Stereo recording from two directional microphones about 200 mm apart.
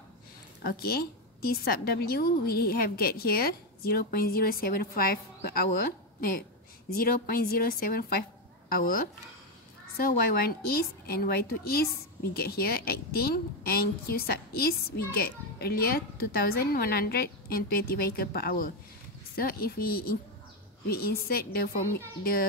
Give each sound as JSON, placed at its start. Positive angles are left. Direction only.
{"t": 0.7, "sound": "a woman's voice", "side_deg": 50}